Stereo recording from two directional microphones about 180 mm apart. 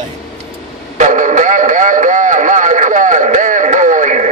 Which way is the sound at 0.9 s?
45° right (ahead or behind).